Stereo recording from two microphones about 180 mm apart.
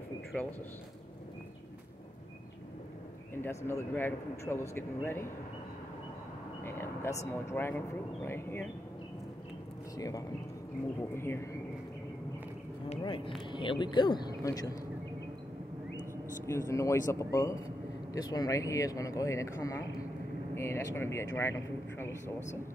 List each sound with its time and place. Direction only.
0.3 s speech: 5° left (ahead or behind)
3.3 s speech: 10° left (ahead or behind)
6.6 s speech: 15° left (ahead or behind)
9.9 s speech: 20° left (ahead or behind)
13.0 s speech: 30° left (ahead or behind)
16.4 s a man's voice: 15° left (ahead or behind)